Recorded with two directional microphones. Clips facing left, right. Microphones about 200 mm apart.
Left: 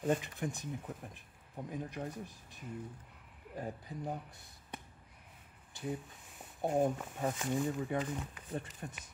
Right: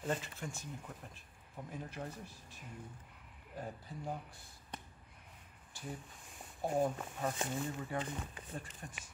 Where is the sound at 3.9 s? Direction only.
15° left (ahead or behind).